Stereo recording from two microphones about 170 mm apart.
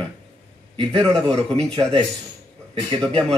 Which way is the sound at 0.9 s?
5° left (ahead or behind).